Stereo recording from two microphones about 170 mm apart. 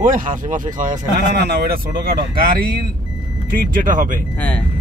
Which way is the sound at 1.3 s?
70° right (ahead or behind).